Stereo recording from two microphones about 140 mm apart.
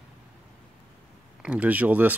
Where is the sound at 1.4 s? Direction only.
10° right (ahead or behind).